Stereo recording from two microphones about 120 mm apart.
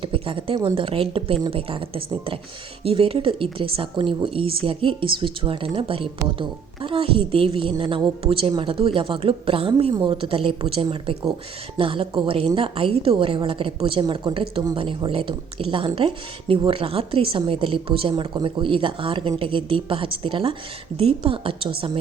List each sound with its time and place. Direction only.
0.0 s speech: 50° right (ahead or behind)